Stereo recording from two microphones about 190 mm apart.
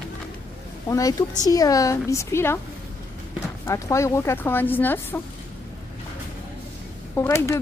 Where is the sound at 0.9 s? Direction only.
20° left (ahead or behind).